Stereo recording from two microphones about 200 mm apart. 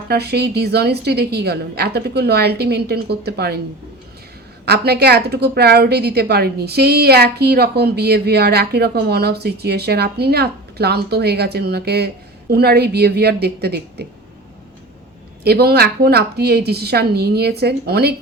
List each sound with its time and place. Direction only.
0.1 s a woman's voice: 55° right (ahead or behind)
4.6 s a woman's voice: 55° right (ahead or behind)
15.4 s a woman's voice: 55° right (ahead or behind)